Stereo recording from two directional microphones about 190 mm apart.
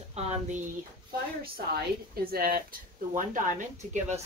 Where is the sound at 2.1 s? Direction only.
50° right (ahead or behind).